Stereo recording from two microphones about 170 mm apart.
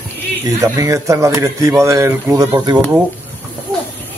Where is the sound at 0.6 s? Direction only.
20° right (ahead or behind).